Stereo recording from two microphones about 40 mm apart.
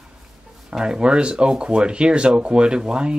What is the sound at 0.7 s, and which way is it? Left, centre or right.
Speech, right.